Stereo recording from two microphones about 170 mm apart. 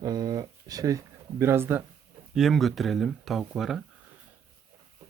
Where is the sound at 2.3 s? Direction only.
Centre (ahead or behind).